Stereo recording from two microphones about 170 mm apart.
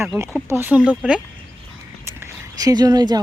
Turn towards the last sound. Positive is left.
turn(degrees=-25)  # may be behind; listen again after turning